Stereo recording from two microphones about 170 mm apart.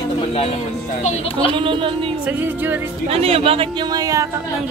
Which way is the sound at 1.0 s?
40° left (ahead or behind).